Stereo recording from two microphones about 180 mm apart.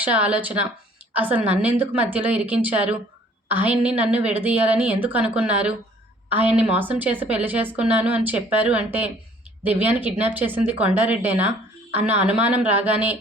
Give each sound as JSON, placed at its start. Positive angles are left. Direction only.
{"t": 0.0, "sound": "speech", "side_deg": -10}